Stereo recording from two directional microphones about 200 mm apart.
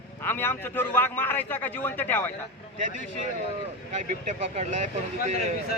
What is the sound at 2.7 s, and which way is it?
Speech, 40° right (ahead or behind).